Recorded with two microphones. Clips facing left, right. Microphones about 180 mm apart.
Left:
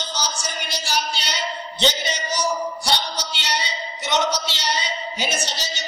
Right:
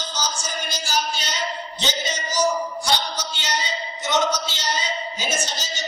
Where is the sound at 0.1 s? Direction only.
65° left (ahead or behind).